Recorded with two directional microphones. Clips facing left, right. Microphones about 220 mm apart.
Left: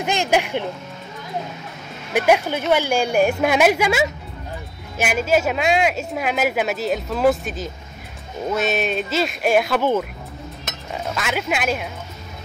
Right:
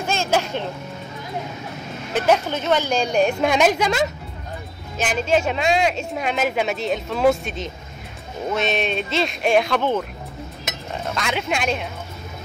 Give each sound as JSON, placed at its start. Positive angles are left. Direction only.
{"t": 0.0, "sound": "speech", "side_deg": 15}
{"t": 2.1, "sound": "a woman's voice", "side_deg": 10}
{"t": 11.1, "sound": "speech", "side_deg": 5}